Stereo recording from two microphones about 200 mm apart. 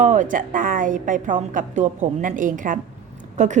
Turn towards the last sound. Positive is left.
turn(degrees=-35)  # may be behind; listen again after turning